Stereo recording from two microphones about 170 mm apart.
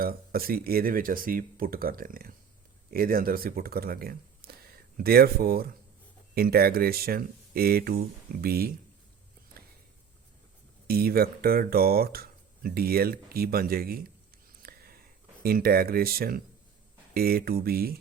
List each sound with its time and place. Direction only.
0.0 s speech: 60° right (ahead or behind)
10.8 s speech: 65° right (ahead or behind)
14.6 s a sound: 60° right (ahead or behind)
15.4 s speech: 60° right (ahead or behind)